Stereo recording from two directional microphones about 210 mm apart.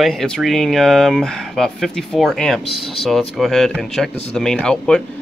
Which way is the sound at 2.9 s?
Centre (ahead or behind).